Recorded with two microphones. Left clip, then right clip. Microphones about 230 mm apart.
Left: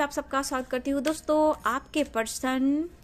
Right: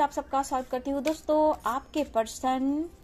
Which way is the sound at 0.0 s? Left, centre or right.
Left.